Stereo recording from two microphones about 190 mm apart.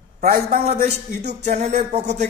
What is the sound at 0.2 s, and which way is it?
Speech, 45° right (ahead or behind).